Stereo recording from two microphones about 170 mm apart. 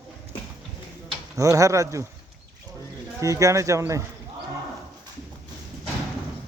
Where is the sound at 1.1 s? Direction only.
20° right (ahead or behind).